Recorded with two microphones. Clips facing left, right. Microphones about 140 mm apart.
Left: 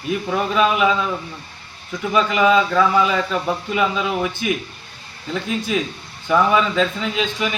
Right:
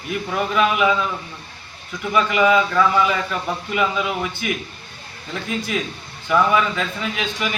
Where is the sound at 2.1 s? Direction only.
20° left (ahead or behind).